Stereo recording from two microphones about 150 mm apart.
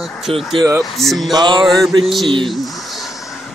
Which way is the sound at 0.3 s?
40° right (ahead or behind).